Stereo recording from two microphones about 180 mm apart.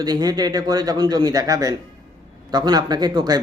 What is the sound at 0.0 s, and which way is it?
A man's voice, 20° right (ahead or behind).